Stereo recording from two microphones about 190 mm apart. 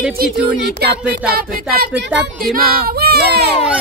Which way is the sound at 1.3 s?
50° right (ahead or behind).